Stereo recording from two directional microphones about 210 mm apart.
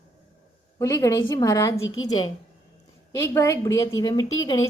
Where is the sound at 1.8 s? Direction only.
70° left (ahead or behind).